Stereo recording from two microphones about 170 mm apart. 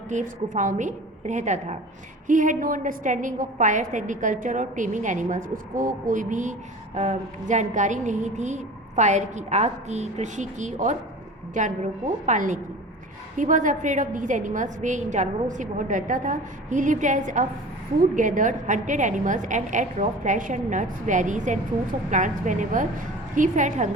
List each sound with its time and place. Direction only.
0.1 s a woman's voice: 50° right (ahead or behind)